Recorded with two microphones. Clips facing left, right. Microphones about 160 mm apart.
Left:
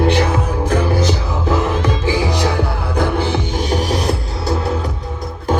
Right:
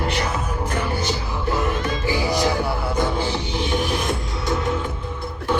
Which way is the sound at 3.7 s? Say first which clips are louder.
Left 5 dB; 35° left (ahead or behind).